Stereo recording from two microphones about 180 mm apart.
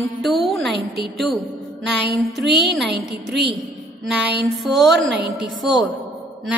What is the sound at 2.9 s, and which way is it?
Speech, 70° right (ahead or behind).